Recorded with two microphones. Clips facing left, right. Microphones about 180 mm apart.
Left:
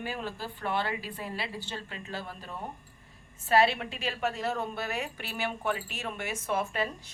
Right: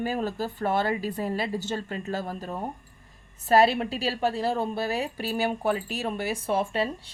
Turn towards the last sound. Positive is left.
turn(degrees=-30)  # may be behind; listen again after turning